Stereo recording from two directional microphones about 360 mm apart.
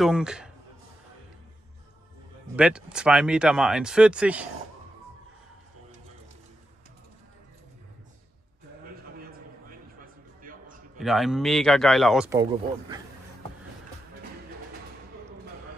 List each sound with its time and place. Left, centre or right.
0.0 s speech: centre
2.5 s speech: centre
9.2 s a sound: right
11.0 s speech: centre